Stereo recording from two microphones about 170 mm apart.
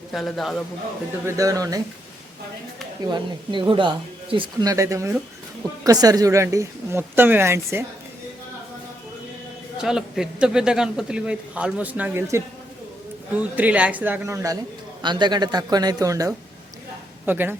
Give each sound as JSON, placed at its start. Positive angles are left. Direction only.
{"t": 0.1, "sound": "a man's voice", "side_deg": 0}
{"t": 1.2, "sound": "speech", "side_deg": -20}
{"t": 3.0, "sound": "speech", "side_deg": -25}
{"t": 9.7, "sound": "a man's voice", "side_deg": -5}